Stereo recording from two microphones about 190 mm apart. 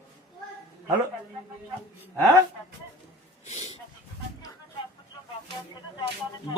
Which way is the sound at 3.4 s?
35° left (ahead or behind).